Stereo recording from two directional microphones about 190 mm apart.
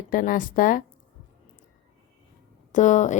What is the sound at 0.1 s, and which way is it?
Speech, 45° left (ahead or behind).